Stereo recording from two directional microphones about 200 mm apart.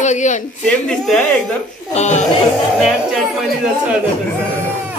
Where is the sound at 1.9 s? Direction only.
35° left (ahead or behind).